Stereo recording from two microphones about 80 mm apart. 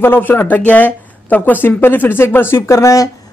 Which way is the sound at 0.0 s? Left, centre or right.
Left.